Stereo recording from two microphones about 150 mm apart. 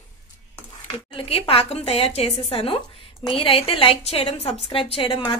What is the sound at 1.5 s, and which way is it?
Speech, 40° left (ahead or behind).